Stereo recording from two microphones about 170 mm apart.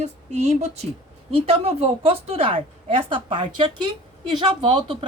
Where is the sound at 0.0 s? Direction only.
40° right (ahead or behind).